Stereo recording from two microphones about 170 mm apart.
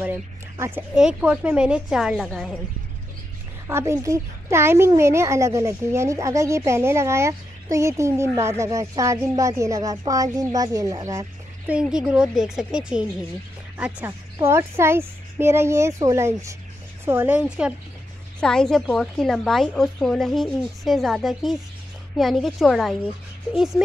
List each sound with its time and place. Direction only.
0.0 s a woman's voice: 10° right (ahead or behind)
3.6 s a child's voice: 15° right (ahead or behind)
11.6 s a woman's voice: 5° right (ahead or behind)
18.4 s a woman's voice: 5° left (ahead or behind)